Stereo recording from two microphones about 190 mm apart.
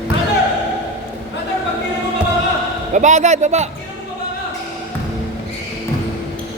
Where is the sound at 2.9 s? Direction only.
40° right (ahead or behind).